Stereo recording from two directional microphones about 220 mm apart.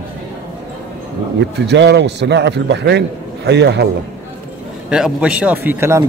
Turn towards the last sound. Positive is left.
turn(degrees=-10)  # may be behind; listen again after turning